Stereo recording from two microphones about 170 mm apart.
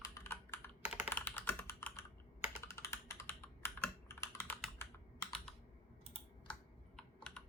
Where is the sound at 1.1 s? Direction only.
10° left (ahead or behind).